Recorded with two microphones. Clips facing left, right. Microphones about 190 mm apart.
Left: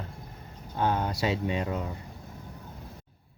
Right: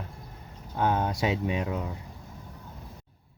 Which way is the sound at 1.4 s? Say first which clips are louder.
Even; 10° right (ahead or behind).